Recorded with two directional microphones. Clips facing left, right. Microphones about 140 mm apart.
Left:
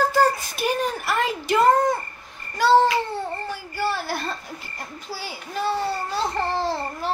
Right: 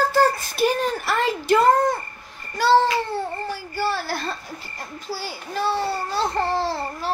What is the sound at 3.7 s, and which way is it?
A child's voice, 15° left (ahead or behind).